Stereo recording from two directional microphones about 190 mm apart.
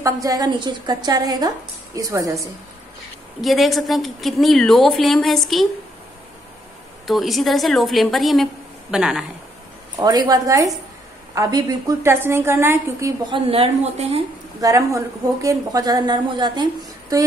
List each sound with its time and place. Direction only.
0.0 s a woman's voice: 20° right (ahead or behind)
3.3 s a woman's voice: centre (ahead or behind)
7.1 s a woman's voice: centre (ahead or behind)
9.9 s a woman's voice: 20° right (ahead or behind)
13.3 s a woman's voice: 30° right (ahead or behind)
14.6 s a woman's voice: 15° right (ahead or behind)